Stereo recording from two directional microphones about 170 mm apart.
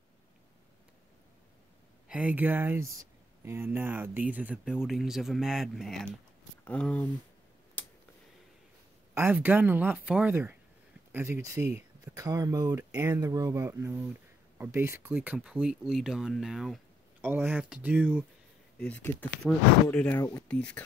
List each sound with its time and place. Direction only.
2.0 s speech: 10° right (ahead or behind)
7.8 s a sound: 10° left (ahead or behind)
9.1 s speech: 10° right (ahead or behind)
17.2 s speech: 10° right (ahead or behind)
18.8 s speech: 10° left (ahead or behind)